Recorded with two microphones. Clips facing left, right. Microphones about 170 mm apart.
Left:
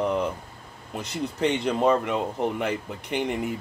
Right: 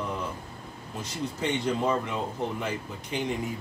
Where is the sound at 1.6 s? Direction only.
65° left (ahead or behind).